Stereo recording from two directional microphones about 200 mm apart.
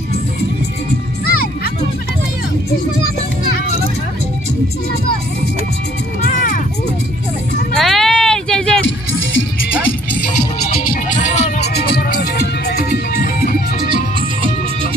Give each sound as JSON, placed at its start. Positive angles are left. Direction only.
{"t": 6.2, "sound": "music", "side_deg": 40}
{"t": 7.7, "sound": "a sound", "side_deg": 0}
{"t": 10.7, "sound": "music", "side_deg": 40}
{"t": 11.6, "sound": "music", "side_deg": 50}